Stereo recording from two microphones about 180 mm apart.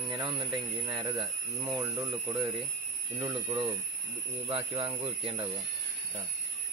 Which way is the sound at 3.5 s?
20° right (ahead or behind).